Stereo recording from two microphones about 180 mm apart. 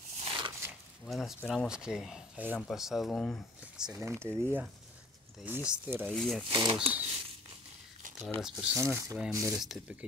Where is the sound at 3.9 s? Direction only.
15° right (ahead or behind).